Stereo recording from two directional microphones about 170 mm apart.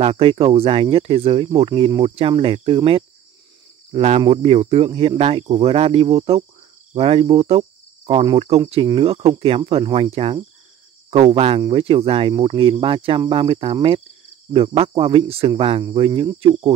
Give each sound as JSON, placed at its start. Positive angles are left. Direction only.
{"t": 0.0, "sound": "speech", "side_deg": -35}
{"t": 6.9, "sound": "cricket", "side_deg": -35}
{"t": 8.8, "sound": "speech", "side_deg": -35}